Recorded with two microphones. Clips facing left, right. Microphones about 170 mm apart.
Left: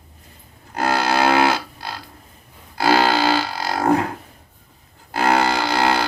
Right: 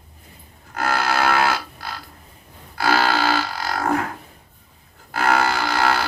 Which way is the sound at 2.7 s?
20° left (ahead or behind).